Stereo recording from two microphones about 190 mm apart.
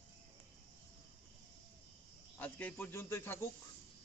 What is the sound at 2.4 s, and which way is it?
Speech, 10° left (ahead or behind).